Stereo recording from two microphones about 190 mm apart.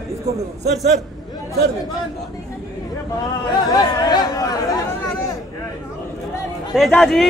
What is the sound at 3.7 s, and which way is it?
Chatter, 20° left (ahead or behind).